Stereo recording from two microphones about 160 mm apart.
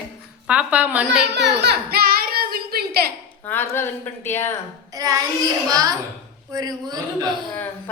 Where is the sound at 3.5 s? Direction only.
15° left (ahead or behind).